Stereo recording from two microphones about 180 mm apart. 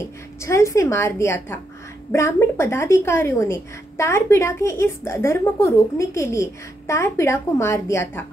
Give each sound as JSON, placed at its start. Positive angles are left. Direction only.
{"t": 0.4, "sound": "a woman's voice", "side_deg": 15}